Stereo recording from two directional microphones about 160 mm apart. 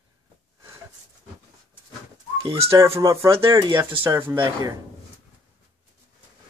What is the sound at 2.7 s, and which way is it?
Speech, 15° right (ahead or behind).